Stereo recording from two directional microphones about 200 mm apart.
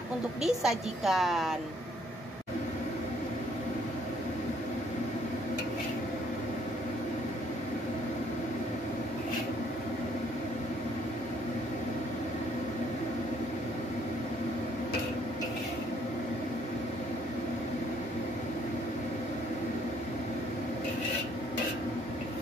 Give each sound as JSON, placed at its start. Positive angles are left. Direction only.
{"t": 0.4, "sound": "a woman's voice", "side_deg": 0}